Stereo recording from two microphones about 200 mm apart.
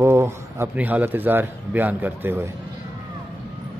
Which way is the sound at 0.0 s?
15° right (ahead or behind).